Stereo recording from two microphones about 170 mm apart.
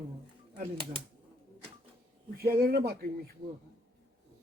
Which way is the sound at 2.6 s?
60° right (ahead or behind).